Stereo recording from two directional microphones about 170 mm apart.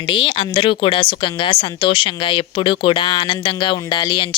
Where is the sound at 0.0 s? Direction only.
30° left (ahead or behind).